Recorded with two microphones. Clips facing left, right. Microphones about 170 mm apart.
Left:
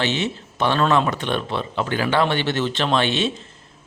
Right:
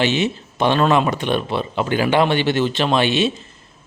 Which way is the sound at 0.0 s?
10° right (ahead or behind).